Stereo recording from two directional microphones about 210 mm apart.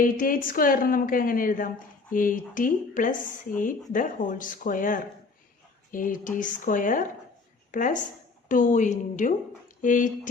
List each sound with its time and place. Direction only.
0.0 s speech: 40° left (ahead or behind)